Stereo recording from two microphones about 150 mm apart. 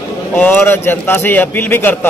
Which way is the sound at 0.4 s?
15° left (ahead or behind).